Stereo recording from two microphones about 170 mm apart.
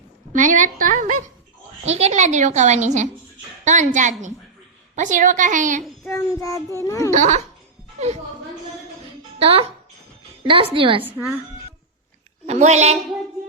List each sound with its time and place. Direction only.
0.3 s a woman's voice: 50° right (ahead or behind)
6.1 s a child's voice: 20° left (ahead or behind)
7.1 s a woman's voice: 45° right (ahead or behind)
9.4 s a woman's voice: 35° right (ahead or behind)
12.5 s a woman's voice: 40° right (ahead or behind)